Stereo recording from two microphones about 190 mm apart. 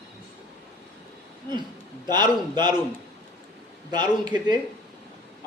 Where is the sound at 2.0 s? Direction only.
20° right (ahead or behind).